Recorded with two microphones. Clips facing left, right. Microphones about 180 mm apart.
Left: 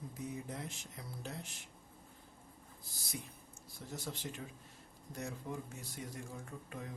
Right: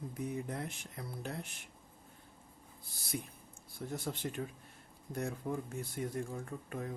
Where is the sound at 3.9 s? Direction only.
55° right (ahead or behind).